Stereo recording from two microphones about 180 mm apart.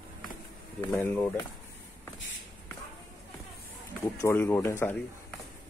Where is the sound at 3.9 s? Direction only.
15° left (ahead or behind).